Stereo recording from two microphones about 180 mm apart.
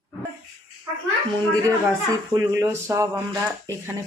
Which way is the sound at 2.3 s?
20° right (ahead or behind).